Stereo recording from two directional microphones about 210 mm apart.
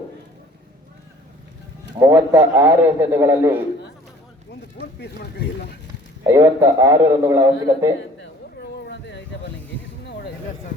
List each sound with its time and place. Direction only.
2.0 s a man's voice: 15° right (ahead or behind)
4.9 s speech: 50° left (ahead or behind)
6.2 s a man's voice: 15° right (ahead or behind)
8.7 s a sound: 55° left (ahead or behind)